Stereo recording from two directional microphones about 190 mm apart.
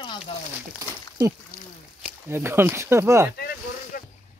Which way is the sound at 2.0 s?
10° right (ahead or behind).